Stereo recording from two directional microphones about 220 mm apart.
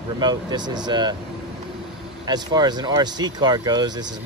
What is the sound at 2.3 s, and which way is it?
Speech, 20° right (ahead or behind).